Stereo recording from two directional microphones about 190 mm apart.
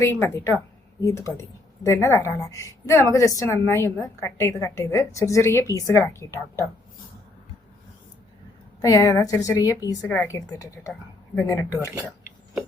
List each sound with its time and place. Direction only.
0.0 s a woman's voice: 15° left (ahead or behind)
8.8 s a woman's voice: 15° left (ahead or behind)